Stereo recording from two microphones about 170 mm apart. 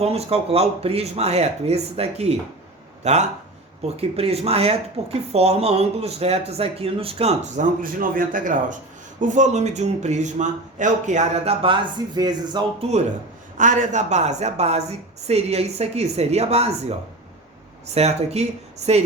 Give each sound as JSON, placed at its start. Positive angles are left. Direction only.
{"t": 0.0, "sound": "a man's voice", "side_deg": -35}
{"t": 12.8, "sound": "speech", "side_deg": -35}
{"t": 17.8, "sound": "speech", "side_deg": -40}